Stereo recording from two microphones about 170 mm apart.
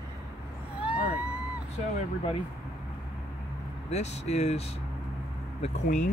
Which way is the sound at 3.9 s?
40° left (ahead or behind).